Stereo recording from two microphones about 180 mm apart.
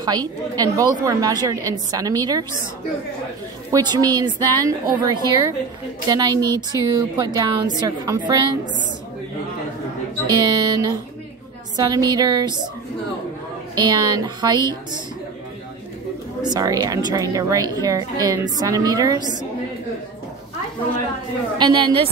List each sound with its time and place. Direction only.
0.0 s a woman's voice: 20° right (ahead or behind)
3.7 s a woman's voice: 20° right (ahead or behind)
10.2 s a woman's voice: 20° right (ahead or behind)
13.7 s a woman's voice: 20° right (ahead or behind)
16.4 s a woman's voice: 20° right (ahead or behind)
21.5 s a woman's voice: 25° right (ahead or behind)